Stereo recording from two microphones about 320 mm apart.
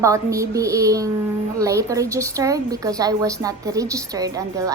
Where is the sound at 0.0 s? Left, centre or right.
Centre.